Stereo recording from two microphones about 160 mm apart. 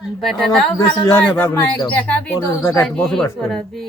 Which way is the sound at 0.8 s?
30° left (ahead or behind).